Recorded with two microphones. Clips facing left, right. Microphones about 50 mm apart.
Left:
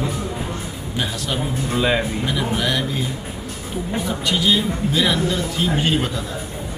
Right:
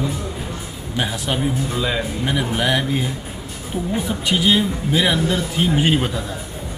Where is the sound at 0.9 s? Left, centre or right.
Right.